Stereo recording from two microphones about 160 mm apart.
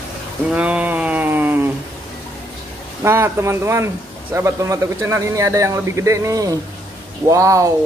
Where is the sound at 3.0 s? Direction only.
15° right (ahead or behind).